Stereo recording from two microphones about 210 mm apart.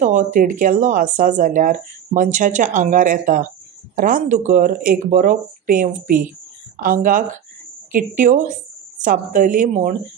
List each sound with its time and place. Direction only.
0.0 s speech: 35° right (ahead or behind)